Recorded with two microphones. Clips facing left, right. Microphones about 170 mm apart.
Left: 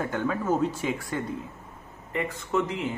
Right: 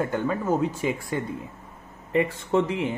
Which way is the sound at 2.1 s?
30° right (ahead or behind).